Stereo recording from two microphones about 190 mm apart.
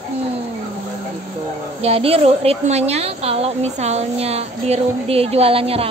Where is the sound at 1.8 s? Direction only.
30° right (ahead or behind).